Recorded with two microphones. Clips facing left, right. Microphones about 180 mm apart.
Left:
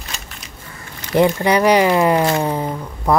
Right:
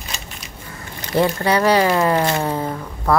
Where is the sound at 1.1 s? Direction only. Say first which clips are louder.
Left 3 dB; 15° left (ahead or behind).